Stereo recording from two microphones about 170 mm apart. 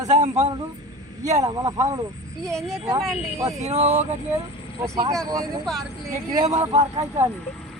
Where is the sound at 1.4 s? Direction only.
20° right (ahead or behind).